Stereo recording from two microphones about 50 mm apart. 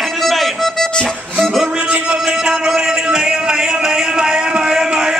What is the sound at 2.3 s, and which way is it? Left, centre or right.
Music, centre.